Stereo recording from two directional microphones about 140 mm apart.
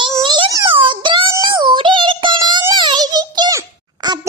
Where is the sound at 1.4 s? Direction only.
35° right (ahead or behind).